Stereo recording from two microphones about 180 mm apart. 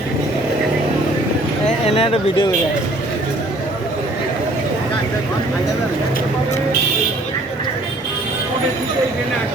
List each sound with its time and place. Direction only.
2.0 s speech: 35° left (ahead or behind)